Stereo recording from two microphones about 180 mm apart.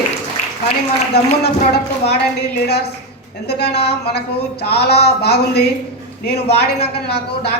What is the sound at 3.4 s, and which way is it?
A man's voice, 65° left (ahead or behind).